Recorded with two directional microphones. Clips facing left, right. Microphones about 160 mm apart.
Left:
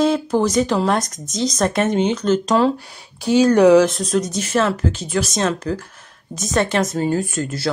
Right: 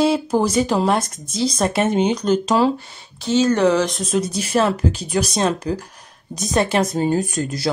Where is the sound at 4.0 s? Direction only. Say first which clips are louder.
Left 1 dB; 5° right (ahead or behind).